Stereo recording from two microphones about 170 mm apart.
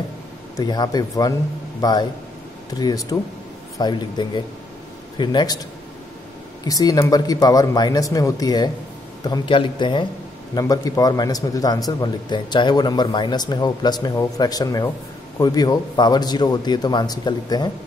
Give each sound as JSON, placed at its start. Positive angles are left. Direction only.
{"t": 0.6, "sound": "speech", "side_deg": 25}
{"t": 6.6, "sound": "speech", "side_deg": 20}